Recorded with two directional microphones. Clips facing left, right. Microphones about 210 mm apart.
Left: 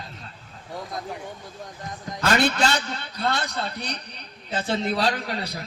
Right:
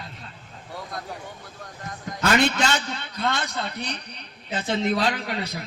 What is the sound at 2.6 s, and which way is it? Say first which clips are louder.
A man's voice: left 1 dB; 40° left (ahead or behind).